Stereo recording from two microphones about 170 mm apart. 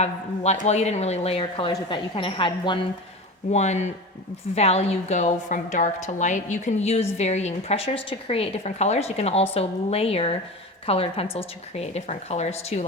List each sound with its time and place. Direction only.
0.0 s speech: 40° left (ahead or behind)
3.5 s a woman's voice: 40° left (ahead or behind)